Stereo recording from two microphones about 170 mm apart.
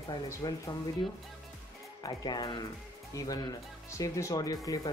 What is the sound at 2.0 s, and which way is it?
Speech, 25° left (ahead or behind).